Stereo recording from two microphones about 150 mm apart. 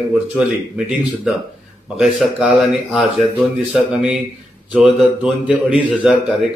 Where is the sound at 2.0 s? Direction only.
Centre (ahead or behind).